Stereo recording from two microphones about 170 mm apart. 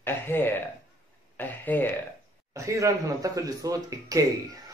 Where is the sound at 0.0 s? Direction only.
10° left (ahead or behind).